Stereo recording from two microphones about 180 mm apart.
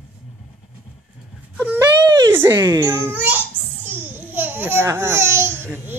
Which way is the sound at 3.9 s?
10° right (ahead or behind).